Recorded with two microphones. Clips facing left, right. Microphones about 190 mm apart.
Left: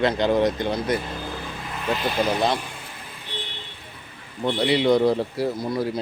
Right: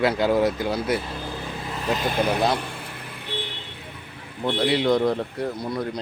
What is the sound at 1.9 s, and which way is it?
Speech, 50° right (ahead or behind).